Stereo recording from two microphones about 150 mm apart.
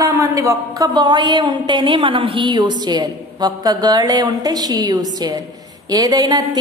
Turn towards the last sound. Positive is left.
turn(degrees=-25)  # may be behind; listen again after turning